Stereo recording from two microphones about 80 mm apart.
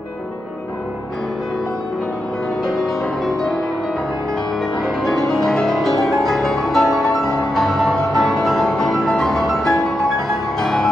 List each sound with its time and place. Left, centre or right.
2.6 s music: centre
4.8 s music: centre